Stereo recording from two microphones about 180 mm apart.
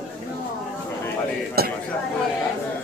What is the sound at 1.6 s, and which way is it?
Chatter, 60° right (ahead or behind).